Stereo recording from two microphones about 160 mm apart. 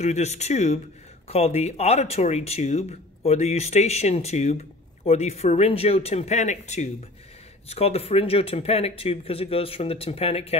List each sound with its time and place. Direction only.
0.0 s speech: 45° left (ahead or behind)